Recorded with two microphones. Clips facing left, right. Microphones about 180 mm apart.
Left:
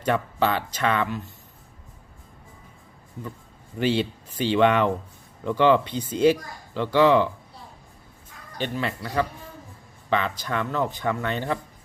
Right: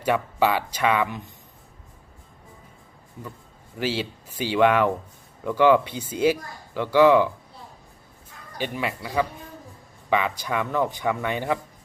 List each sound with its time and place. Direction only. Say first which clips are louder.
0.0 s speech: right 1 dB; 10° right (ahead or behind)
3.8 s speech: left 4 dB; 5° right (ahead or behind)
8.5 s speech: even; 10° right (ahead or behind)